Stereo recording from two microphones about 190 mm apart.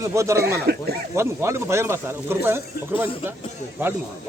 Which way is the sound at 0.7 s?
60° right (ahead or behind).